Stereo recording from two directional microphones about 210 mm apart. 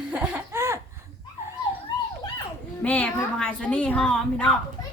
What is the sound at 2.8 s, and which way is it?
A woman's voice, 5° left (ahead or behind).